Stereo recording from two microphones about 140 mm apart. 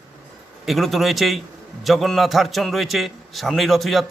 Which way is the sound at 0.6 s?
Centre (ahead or behind).